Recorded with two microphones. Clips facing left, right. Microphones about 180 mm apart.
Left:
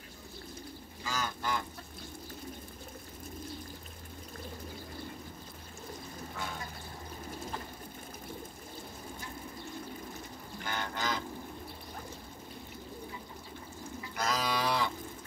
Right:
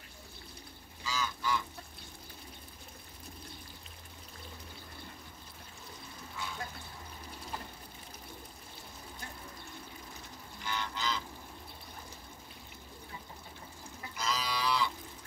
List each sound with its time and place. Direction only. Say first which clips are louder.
1.0 s goose: even; 55° left (ahead or behind)
10.6 s livestock: left 1 dB; 50° left (ahead or behind)
14.1 s music: left 4 dB; 50° left (ahead or behind)